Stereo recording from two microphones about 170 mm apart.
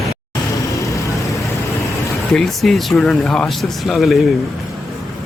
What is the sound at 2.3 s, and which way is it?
Speech, centre (ahead or behind).